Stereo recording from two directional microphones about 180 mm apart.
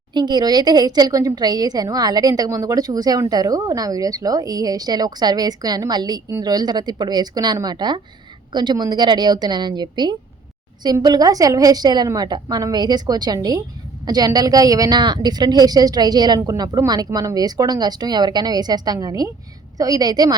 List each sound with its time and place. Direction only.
0.1 s a woman's voice: 25° right (ahead or behind)